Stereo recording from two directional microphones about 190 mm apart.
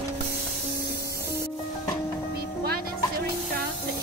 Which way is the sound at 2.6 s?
55° right (ahead or behind).